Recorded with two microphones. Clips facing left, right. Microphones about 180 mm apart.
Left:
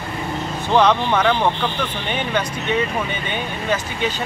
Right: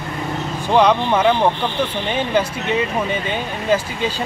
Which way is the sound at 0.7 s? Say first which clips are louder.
Right 1 dB; 10° right (ahead or behind).